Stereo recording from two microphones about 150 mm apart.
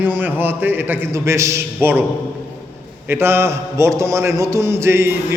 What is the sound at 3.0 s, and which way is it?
A man's voice, 15° right (ahead or behind).